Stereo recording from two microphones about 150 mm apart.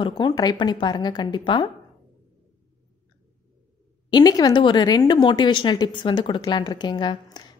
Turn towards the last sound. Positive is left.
turn(degrees=30)  # may be behind; listen again after turning